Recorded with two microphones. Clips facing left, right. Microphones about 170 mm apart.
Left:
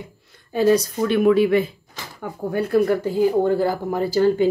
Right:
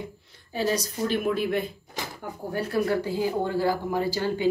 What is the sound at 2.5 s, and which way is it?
Speech, 55° left (ahead or behind).